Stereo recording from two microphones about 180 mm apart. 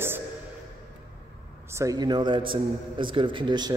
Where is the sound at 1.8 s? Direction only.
20° right (ahead or behind).